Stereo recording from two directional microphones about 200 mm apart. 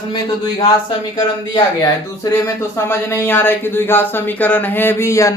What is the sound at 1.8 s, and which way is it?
Speech, 15° left (ahead or behind).